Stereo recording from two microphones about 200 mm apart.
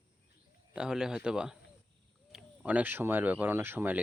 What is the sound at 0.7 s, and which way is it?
A man's voice, 5° right (ahead or behind).